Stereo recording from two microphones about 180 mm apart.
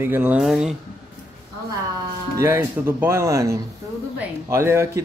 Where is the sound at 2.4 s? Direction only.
15° right (ahead or behind).